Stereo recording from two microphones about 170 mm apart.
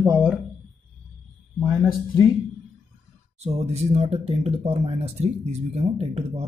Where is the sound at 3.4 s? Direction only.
40° right (ahead or behind).